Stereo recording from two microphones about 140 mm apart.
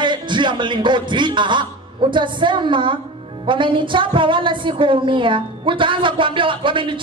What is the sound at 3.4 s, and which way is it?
A woman's voice, 35° right (ahead or behind).